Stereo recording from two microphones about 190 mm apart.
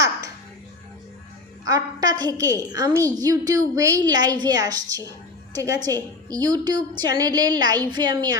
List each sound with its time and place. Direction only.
1.6 s a woman's voice: 20° right (ahead or behind)